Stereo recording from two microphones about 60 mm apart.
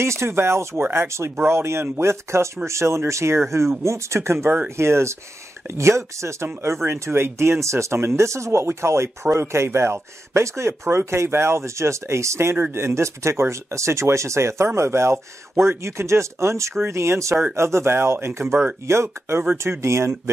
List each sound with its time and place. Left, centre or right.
0.0 s speech: right